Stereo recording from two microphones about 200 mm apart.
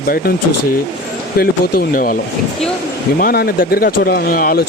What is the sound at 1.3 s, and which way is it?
Speech, 50° left (ahead or behind).